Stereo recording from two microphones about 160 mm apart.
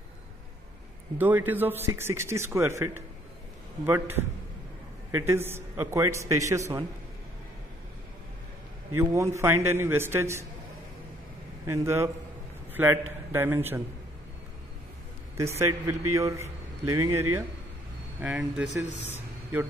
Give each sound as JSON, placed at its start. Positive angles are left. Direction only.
{"t": 1.1, "sound": "a man's voice", "side_deg": -10}
{"t": 8.9, "sound": "a man's voice", "side_deg": -20}
{"t": 11.6, "sound": "a man's voice", "side_deg": -20}
{"t": 15.3, "sound": "a man's voice", "side_deg": -15}
{"t": 18.2, "sound": "speech", "side_deg": -5}